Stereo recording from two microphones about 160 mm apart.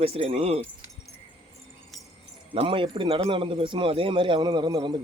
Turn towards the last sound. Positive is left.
turn(degrees=-25)  # may be behind; listen again after turning